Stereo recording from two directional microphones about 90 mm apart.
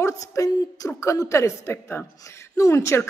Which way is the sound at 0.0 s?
35° left (ahead or behind).